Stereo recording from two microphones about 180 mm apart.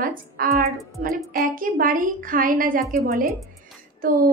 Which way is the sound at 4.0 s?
50° right (ahead or behind).